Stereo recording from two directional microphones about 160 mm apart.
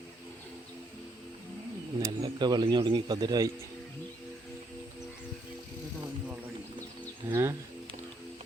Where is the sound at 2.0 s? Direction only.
25° right (ahead or behind).